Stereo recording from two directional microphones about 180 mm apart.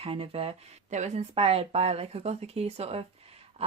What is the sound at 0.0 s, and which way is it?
Speech, 30° right (ahead or behind).